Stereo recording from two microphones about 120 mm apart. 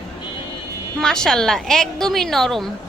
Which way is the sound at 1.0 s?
5° left (ahead or behind).